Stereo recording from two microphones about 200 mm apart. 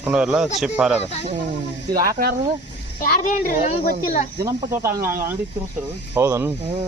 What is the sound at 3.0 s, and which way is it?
Speech, 40° left (ahead or behind).